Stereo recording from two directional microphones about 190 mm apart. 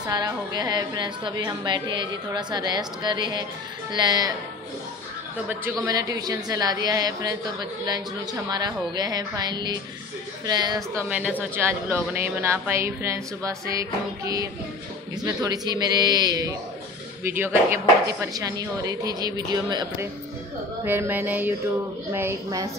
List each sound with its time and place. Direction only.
0.0 s a woman's voice: 20° right (ahead or behind)
5.5 s a woman's voice: 10° right (ahead or behind)
5.9 s a woman's voice: 20° right (ahead or behind)
11.1 s a woman's voice: 5° right (ahead or behind)
20.8 s a woman's voice: 10° right (ahead or behind)